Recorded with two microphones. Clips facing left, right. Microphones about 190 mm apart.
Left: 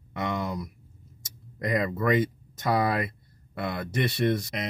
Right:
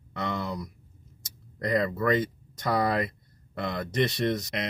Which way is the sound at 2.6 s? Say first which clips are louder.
Even; 5° left (ahead or behind).